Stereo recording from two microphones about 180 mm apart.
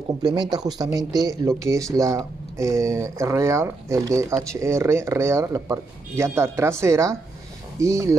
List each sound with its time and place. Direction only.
0.2 s speech: 25° right (ahead or behind)